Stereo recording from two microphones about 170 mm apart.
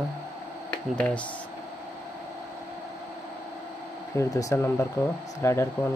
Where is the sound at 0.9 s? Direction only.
5° left (ahead or behind).